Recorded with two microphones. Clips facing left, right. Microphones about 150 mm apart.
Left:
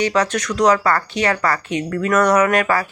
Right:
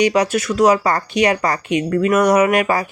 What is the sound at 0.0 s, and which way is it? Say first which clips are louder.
Speech: right 3 dB; 15° right (ahead or behind).